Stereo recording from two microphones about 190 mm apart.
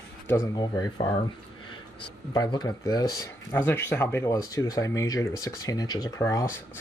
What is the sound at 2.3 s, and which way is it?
Speech, 20° left (ahead or behind).